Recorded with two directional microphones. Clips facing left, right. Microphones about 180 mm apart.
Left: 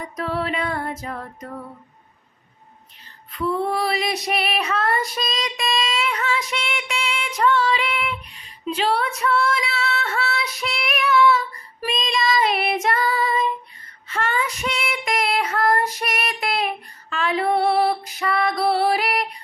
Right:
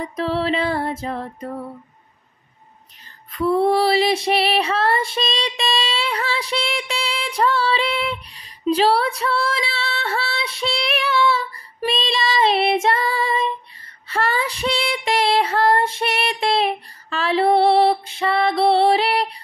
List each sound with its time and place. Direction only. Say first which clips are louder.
0.0 s female singing: right 4 dB; 30° right (ahead or behind)
3.3 s female singing: right 6 dB; 40° right (ahead or behind)